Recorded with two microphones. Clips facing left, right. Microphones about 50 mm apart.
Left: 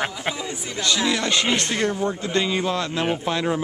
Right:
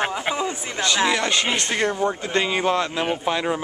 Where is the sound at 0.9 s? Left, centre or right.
Right.